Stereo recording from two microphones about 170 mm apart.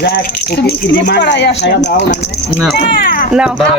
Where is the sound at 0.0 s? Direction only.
60° left (ahead or behind); by 2.4 s 90° left.